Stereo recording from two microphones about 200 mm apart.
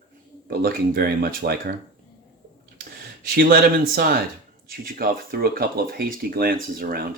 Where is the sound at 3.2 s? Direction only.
50° right (ahead or behind).